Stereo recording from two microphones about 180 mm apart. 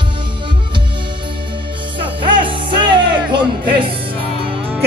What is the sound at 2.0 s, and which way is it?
Music, 30° right (ahead or behind).